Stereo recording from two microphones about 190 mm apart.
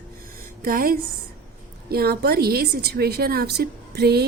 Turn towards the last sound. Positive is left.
turn(degrees=-60)  # may be behind; listen again after turning